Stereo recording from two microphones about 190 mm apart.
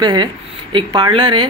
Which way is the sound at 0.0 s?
20° right (ahead or behind).